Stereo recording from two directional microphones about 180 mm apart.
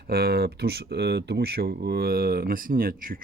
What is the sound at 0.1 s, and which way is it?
Speech, 60° right (ahead or behind).